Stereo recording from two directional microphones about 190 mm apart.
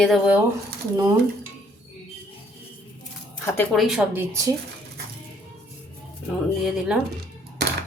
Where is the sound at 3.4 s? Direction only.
10° left (ahead or behind).